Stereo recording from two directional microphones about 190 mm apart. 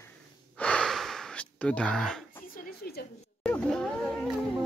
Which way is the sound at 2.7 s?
55° left (ahead or behind).